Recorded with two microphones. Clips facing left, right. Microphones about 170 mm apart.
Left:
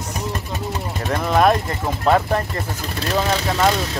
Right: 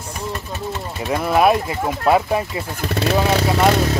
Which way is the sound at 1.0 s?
10° right (ahead or behind).